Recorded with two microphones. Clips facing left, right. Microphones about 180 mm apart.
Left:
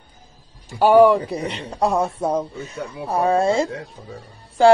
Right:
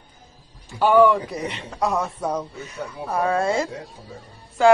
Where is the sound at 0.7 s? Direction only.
40° left (ahead or behind).